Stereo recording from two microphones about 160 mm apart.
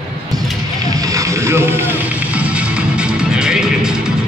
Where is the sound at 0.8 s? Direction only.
20° right (ahead or behind).